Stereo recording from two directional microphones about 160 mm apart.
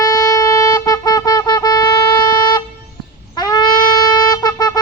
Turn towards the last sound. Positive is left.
turn(degrees=25)  # may be behind; listen again after turning